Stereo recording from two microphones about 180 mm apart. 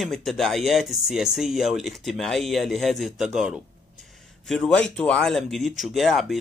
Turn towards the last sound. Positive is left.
turn(degrees=0)  # may be behind; listen again after turning